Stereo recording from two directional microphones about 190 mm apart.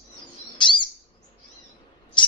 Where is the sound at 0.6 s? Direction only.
25° left (ahead or behind).